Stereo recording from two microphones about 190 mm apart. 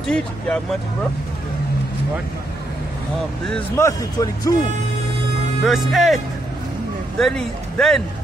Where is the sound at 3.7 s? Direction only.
15° left (ahead or behind).